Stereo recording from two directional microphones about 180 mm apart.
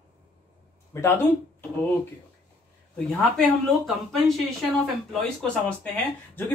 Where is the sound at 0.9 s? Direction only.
15° left (ahead or behind).